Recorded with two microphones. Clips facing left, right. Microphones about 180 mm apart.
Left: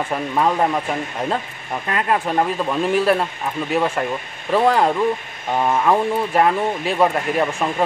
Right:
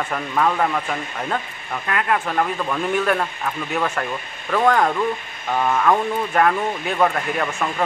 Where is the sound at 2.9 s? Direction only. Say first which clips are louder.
Left 3 dB; 30° left (ahead or behind).